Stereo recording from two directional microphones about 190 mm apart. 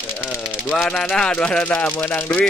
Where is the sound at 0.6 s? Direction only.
5° left (ahead or behind).